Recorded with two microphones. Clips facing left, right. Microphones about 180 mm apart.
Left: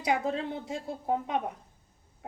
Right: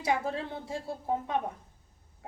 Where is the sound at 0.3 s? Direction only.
20° left (ahead or behind).